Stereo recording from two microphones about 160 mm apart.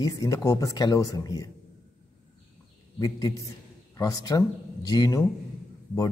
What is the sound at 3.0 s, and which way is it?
Speech, 20° left (ahead or behind).